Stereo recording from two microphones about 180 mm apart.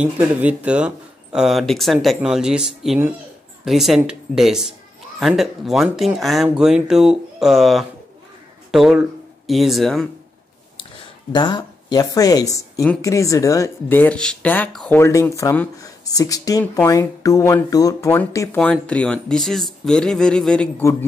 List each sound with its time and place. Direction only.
0.0 s speech: 10° right (ahead or behind)
11.3 s speech: 25° left (ahead or behind); by 20.7 s 5° left (ahead or behind)